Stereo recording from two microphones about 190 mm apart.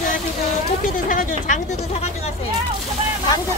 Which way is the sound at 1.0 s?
40° left (ahead or behind).